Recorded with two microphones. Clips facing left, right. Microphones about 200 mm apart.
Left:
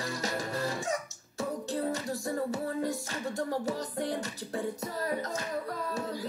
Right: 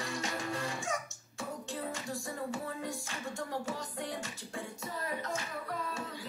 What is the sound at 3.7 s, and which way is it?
Music, 35° left (ahead or behind).